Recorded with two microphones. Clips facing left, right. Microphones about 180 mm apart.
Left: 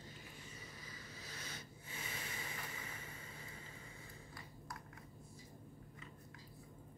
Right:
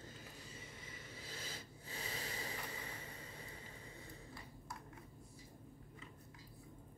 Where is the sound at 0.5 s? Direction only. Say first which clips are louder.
Right 1 dB; 25° right (ahead or behind).